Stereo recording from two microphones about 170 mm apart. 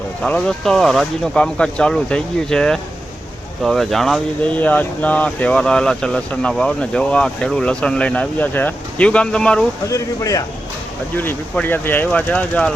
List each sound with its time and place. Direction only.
0.2 s speech: 5° left (ahead or behind)
9.8 s speech: 20° left (ahead or behind)